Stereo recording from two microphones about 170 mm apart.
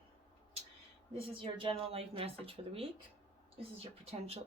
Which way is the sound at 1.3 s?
30° right (ahead or behind).